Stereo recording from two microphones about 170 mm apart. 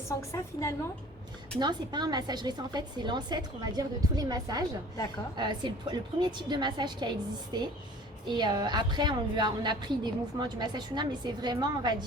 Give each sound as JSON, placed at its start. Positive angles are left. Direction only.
{"t": 0.2, "sound": "a woman's voice", "side_deg": 15}
{"t": 1.5, "sound": "a woman's voice", "side_deg": -25}